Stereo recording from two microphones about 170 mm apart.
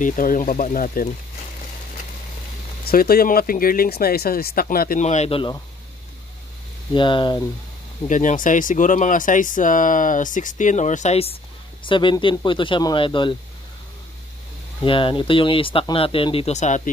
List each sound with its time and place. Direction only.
0.0 s speech: 50° left (ahead or behind)
2.8 s speech: 60° left (ahead or behind)
5.0 s speech: 40° left (ahead or behind)
6.9 s speech: 30° left (ahead or behind)
8.1 s speech: 50° left (ahead or behind); by 13.4 s 30° left (ahead or behind)
14.8 s speech: 30° left (ahead or behind)